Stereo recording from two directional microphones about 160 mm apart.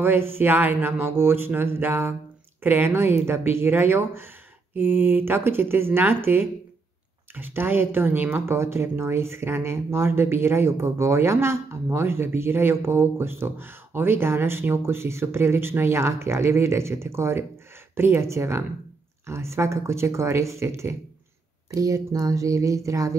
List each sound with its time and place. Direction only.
0.0 s speech: 15° right (ahead or behind)